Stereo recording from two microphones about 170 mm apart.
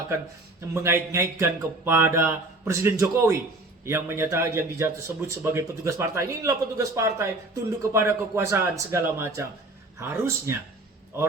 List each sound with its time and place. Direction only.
0.7 s a man's voice: 15° right (ahead or behind)